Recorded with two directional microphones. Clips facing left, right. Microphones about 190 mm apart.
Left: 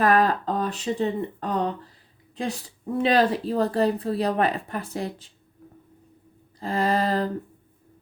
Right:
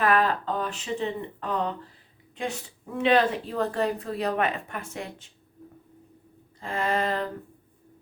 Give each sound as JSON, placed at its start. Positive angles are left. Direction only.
{"t": 0.0, "sound": "a woman's voice", "side_deg": 40}
{"t": 6.6, "sound": "a woman's voice", "side_deg": 35}